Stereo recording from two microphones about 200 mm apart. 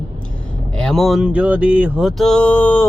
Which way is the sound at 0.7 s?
5° left (ahead or behind).